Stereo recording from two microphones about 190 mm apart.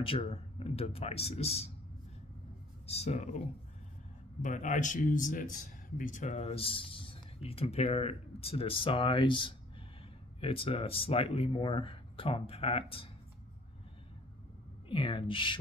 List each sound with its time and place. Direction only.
0.0 s speech: 30° left (ahead or behind)
2.9 s a man's voice: 35° left (ahead or behind)
14.9 s speech: 25° left (ahead or behind)